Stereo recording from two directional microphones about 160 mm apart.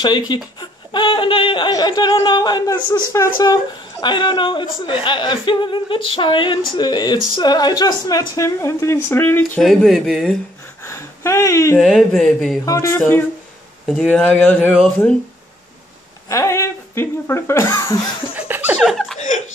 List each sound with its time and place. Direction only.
0.0 s speech: 30° left (ahead or behind)
9.6 s speech: centre (ahead or behind)
10.8 s a sound: 15° left (ahead or behind)
11.8 s speech: centre (ahead or behind)
12.6 s speech: 20° left (ahead or behind)
14.0 s speech: 10° left (ahead or behind)
16.3 s speech: 20° left (ahead or behind)
18.5 s a sound: 10° right (ahead or behind)
18.8 s laughter: centre (ahead or behind)
19.1 s laughter: 45° left (ahead or behind)